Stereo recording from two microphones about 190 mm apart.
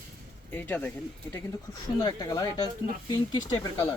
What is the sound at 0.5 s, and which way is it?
Speech, 10° left (ahead or behind).